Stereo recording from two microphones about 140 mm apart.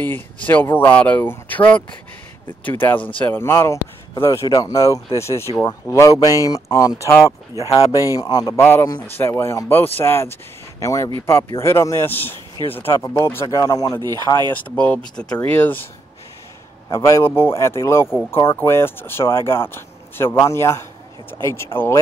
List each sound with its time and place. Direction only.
0.0 s speech: 15° left (ahead or behind)
7.9 s speech: 25° left (ahead or behind)
16.9 s speech: 20° left (ahead or behind)
18.0 s speech: 5° right (ahead or behind)
18.3 s speech: 20° left (ahead or behind)